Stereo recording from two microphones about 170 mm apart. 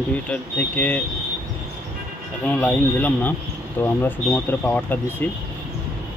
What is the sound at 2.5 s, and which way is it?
Speech, 10° left (ahead or behind).